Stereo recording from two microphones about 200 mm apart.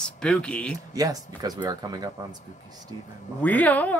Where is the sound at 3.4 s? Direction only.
10° left (ahead or behind).